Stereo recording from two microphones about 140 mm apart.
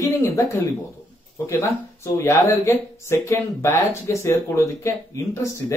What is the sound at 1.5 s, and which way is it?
Speech, 20° left (ahead or behind).